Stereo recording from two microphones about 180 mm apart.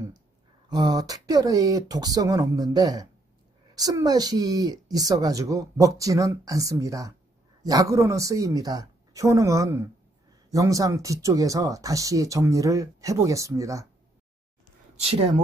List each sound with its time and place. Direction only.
0.7 s speech: 20° right (ahead or behind)
15.0 s speech: 35° right (ahead or behind)